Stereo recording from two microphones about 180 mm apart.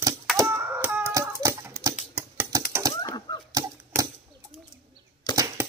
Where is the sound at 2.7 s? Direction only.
15° right (ahead or behind).